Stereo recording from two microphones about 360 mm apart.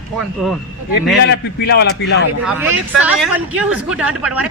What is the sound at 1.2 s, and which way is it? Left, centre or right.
A man's voice, left.